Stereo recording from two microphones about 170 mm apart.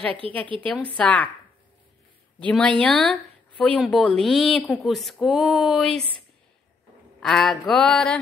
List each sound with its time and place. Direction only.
0.2 s a woman's voice: 35° right (ahead or behind)
0.9 s a woman's voice: 5° left (ahead or behind)
2.4 s a woman's voice: 5° left (ahead or behind)